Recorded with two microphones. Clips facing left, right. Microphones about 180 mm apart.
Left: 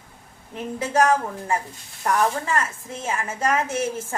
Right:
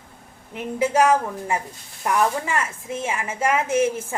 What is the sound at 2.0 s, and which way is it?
A woman's voice, 15° right (ahead or behind).